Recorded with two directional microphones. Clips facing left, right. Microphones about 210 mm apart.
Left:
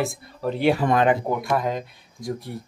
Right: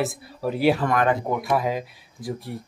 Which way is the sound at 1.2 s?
Centre (ahead or behind).